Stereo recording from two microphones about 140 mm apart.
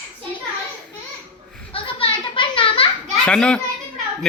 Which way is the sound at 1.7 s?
40° left (ahead or behind).